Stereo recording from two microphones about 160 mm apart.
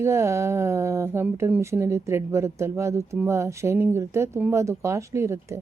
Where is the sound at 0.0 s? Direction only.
15° right (ahead or behind).